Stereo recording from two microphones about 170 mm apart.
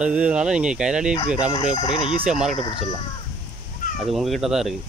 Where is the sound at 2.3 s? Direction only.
5° right (ahead or behind).